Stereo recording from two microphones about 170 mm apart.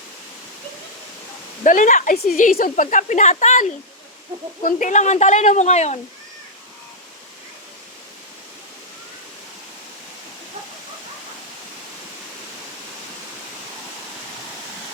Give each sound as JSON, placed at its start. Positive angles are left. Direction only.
{"t": 1.6, "sound": "speech", "side_deg": 50}